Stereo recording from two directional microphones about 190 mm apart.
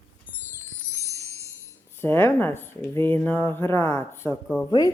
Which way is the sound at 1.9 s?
10° left (ahead or behind).